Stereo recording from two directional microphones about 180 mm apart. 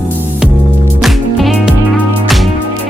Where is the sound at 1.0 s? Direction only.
Centre (ahead or behind).